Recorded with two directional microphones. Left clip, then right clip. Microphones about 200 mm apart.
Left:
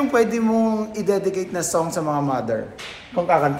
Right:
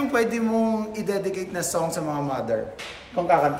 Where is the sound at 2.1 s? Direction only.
25° left (ahead or behind).